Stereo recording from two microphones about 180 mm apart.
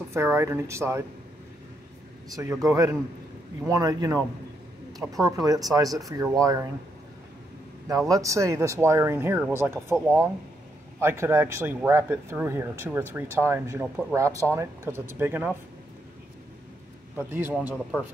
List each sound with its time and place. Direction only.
0.1 s speech: 15° right (ahead or behind)
2.3 s speech: 15° right (ahead or behind)
8.1 s speech: 20° right (ahead or behind)
17.2 s speech: 10° right (ahead or behind)